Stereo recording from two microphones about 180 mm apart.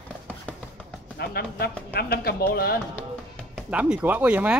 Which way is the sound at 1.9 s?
60° left (ahead or behind).